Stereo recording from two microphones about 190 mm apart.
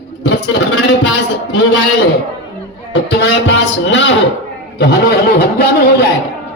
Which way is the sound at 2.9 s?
70° left (ahead or behind).